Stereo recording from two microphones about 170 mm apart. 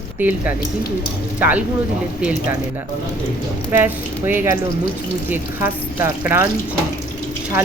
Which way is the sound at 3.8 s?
10° right (ahead or behind).